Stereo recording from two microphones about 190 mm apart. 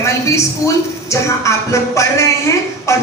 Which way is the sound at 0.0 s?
15° left (ahead or behind).